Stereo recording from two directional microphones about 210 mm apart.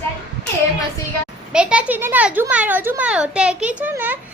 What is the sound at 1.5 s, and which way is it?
A child's voice, 5° right (ahead or behind).